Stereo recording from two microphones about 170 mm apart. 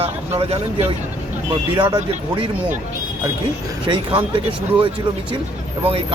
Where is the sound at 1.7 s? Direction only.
25° right (ahead or behind).